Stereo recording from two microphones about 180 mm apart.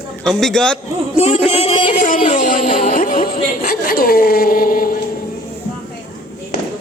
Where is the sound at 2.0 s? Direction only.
45° left (ahead or behind).